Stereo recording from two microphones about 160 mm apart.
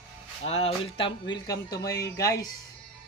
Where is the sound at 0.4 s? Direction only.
40° left (ahead or behind).